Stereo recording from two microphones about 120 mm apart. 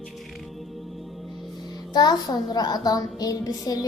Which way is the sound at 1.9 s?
35° left (ahead or behind).